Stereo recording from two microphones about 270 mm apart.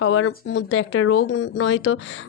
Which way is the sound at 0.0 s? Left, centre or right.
Left.